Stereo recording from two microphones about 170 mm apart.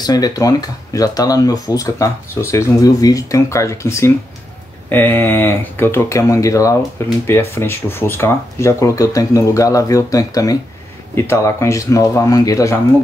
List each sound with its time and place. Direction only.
0.0 s speech: 20° left (ahead or behind)